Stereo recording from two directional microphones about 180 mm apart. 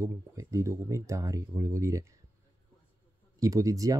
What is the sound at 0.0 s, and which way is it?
Speech, 15° right (ahead or behind).